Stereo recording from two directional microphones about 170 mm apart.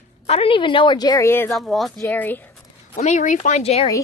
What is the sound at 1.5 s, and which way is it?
Speech, centre (ahead or behind).